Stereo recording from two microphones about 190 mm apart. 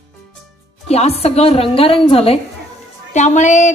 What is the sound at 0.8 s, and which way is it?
A woman's voice, 35° left (ahead or behind).